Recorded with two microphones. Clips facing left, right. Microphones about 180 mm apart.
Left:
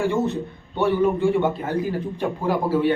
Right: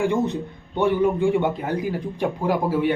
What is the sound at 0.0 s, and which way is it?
A man's voice, 15° right (ahead or behind).